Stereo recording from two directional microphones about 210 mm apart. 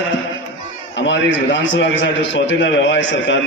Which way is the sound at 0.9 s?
60° left (ahead or behind).